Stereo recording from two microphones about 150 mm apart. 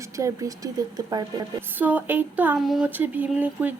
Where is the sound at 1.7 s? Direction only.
10° right (ahead or behind).